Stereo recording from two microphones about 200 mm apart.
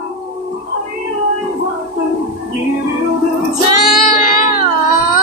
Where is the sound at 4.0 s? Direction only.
40° left (ahead or behind).